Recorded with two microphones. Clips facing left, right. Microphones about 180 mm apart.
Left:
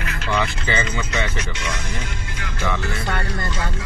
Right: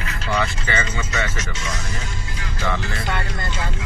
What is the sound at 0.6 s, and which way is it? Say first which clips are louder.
Speech: left 1 dB; 15° left (ahead or behind).